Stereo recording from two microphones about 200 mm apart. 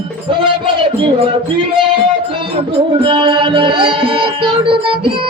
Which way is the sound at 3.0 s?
25° right (ahead or behind).